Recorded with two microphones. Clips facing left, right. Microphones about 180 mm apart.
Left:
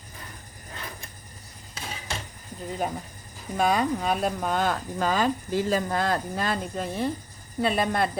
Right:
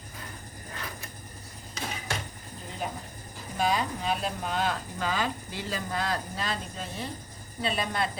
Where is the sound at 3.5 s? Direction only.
50° left (ahead or behind).